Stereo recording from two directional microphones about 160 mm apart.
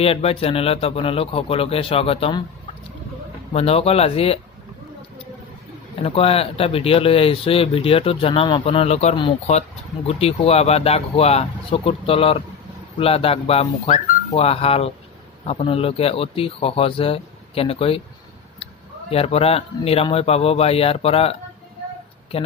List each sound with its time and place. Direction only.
0.0 s speech: 40° left (ahead or behind)
3.5 s speech: 40° left (ahead or behind)
6.0 s speech: 35° left (ahead or behind)